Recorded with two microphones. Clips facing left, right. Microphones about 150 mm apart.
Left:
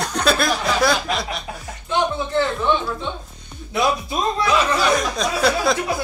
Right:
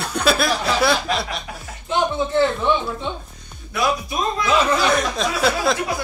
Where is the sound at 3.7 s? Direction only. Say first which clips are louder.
Left 1 dB; 25° left (ahead or behind).